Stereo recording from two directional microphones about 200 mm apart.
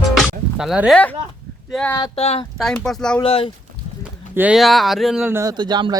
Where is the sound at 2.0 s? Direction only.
30° left (ahead or behind).